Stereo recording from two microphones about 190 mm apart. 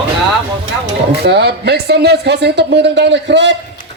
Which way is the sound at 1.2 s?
60° right (ahead or behind).